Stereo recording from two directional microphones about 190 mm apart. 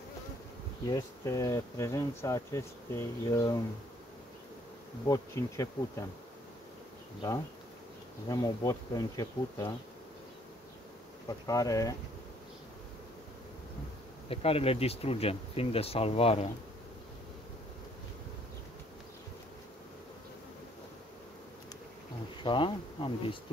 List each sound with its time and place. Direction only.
0.8 s speech: 20° left (ahead or behind)
5.0 s speech: 15° left (ahead or behind)
7.2 s bee: 20° left (ahead or behind)
11.2 s speech: 20° left (ahead or behind)
14.3 s speech: 30° left (ahead or behind)
22.4 s bee: 25° left (ahead or behind)